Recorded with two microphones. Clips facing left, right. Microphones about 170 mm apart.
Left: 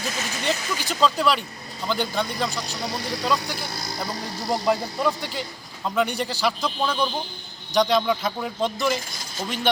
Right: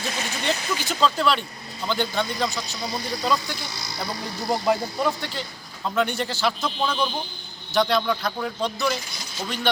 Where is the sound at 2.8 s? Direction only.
75° left (ahead or behind).